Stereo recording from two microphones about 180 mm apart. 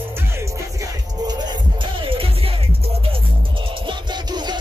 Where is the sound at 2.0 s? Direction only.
30° right (ahead or behind).